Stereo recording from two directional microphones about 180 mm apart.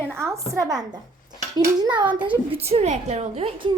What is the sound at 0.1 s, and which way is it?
A woman's voice, 15° right (ahead or behind).